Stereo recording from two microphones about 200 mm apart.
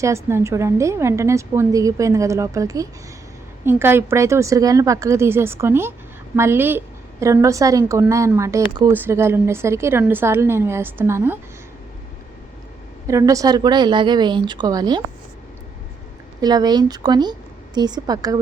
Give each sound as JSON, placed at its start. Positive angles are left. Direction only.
{"t": 0.0, "sound": "a woman's voice", "side_deg": -15}
{"t": 13.1, "sound": "a woman's voice", "side_deg": -15}
{"t": 16.4, "sound": "a woman's voice", "side_deg": -20}